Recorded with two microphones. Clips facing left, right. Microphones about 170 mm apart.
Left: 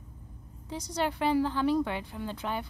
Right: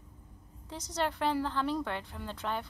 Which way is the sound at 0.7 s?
Centre (ahead or behind).